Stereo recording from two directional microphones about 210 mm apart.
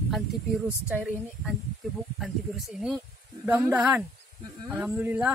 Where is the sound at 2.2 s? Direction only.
Centre (ahead or behind).